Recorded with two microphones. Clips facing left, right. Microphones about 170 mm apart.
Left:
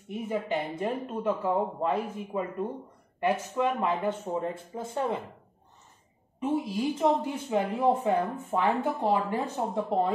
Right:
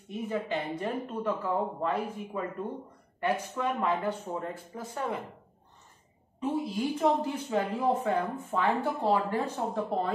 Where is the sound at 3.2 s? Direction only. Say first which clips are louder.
Left 3 dB; 20° left (ahead or behind).